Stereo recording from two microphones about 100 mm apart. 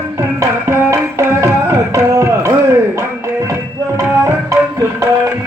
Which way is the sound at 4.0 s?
30° right (ahead or behind).